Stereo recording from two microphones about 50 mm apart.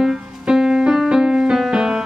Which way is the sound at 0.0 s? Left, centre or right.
Centre.